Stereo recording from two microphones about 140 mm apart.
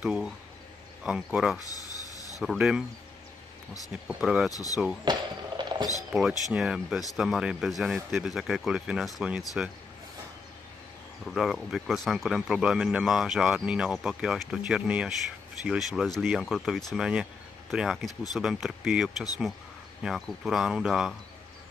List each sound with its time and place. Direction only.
0.0 s speech: 5° right (ahead or behind)
1.6 s a sound: 25° left (ahead or behind)
2.4 s speech: 5° right (ahead or behind)
4.1 s speech: 5° right (ahead or behind)
4.5 s speech: 25° left (ahead or behind)
5.1 s speech: 30° right (ahead or behind)
5.6 s a sound: 35° right (ahead or behind)
6.1 s speech: 5° right (ahead or behind)
11.2 s speech: centre (ahead or behind)